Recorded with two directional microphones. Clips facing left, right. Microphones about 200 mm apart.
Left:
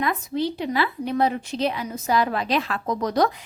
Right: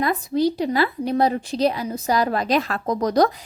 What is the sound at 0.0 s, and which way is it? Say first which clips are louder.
A woman's voice: right 4 dB; 40° right (ahead or behind).